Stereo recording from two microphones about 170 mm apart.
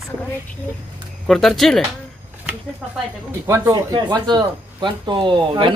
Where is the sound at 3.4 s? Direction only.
15° right (ahead or behind).